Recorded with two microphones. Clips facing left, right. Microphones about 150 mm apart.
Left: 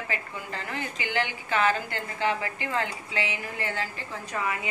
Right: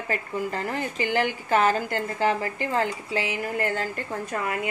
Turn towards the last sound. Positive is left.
turn(degrees=-50)  # may be behind; listen again after turning